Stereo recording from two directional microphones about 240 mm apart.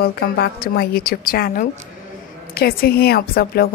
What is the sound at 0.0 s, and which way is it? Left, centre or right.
A woman's voice, left.